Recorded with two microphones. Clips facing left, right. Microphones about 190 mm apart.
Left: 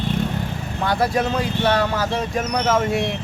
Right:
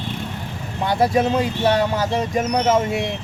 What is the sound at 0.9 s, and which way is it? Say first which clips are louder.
Speech: right 3 dB; 20° right (ahead or behind).